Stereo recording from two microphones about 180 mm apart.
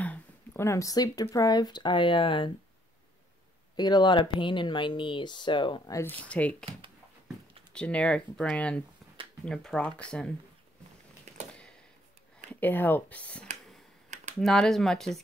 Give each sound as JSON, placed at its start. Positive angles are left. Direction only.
{"t": 0.0, "sound": "speech", "side_deg": 10}
{"t": 3.7, "sound": "speech", "side_deg": 25}
{"t": 7.7, "sound": "speech", "side_deg": 5}
{"t": 11.3, "sound": "a sound", "side_deg": -40}
{"t": 12.5, "sound": "speech", "side_deg": 10}